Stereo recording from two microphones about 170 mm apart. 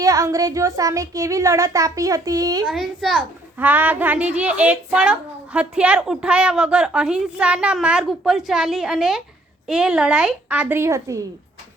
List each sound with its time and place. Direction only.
0.0 s speech: 20° right (ahead or behind)
2.6 s a woman's voice: centre (ahead or behind); by 11.2 s 15° right (ahead or behind)